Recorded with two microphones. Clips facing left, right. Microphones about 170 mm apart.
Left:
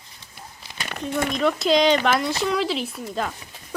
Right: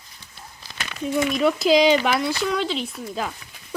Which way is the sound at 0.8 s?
50° left (ahead or behind).